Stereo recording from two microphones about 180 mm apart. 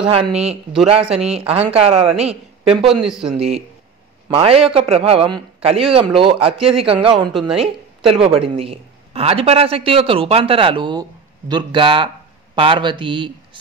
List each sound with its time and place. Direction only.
0.1 s speech: 35° right (ahead or behind)
2.9 s a man's voice: 5° right (ahead or behind)
3.3 s speech: 35° right (ahead or behind)